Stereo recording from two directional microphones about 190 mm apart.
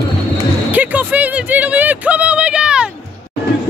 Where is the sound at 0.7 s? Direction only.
10° right (ahead or behind).